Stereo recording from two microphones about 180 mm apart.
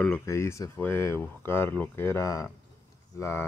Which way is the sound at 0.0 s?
10° left (ahead or behind).